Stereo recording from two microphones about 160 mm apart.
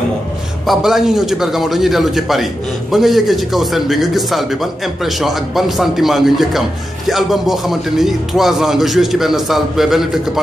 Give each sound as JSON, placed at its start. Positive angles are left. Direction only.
{"t": 0.7, "sound": "a man's voice", "side_deg": 0}